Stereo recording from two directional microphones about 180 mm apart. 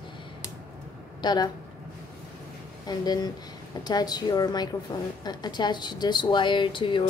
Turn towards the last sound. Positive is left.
turn(degrees=25)  # may be behind; listen again after turning